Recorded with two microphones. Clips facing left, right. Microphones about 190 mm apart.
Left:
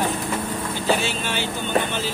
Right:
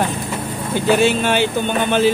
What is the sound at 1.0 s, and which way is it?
Speech, 60° right (ahead or behind).